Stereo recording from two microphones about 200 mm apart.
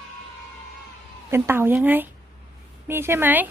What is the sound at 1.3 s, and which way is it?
Speech, 10° right (ahead or behind).